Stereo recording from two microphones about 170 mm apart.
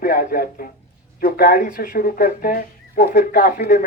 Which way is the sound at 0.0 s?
60° left (ahead or behind).